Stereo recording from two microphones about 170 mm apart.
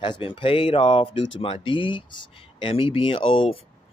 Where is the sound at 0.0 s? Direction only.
30° left (ahead or behind).